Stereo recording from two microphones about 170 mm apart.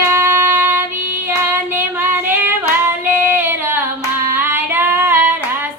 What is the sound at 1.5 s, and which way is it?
Child singing, 10° right (ahead or behind).